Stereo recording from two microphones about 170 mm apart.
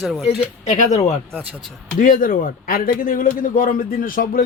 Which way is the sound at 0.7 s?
40° left (ahead or behind).